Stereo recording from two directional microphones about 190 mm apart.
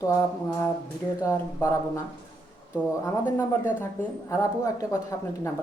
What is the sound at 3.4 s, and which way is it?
Speech, 10° left (ahead or behind).